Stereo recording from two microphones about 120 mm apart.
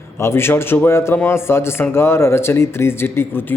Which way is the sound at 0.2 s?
20° left (ahead or behind).